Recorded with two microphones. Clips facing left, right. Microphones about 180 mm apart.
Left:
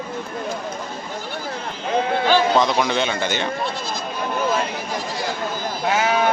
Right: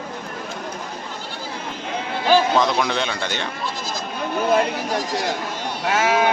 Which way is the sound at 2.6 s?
Centre (ahead or behind).